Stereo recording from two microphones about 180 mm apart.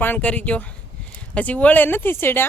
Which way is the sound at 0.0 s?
10° left (ahead or behind).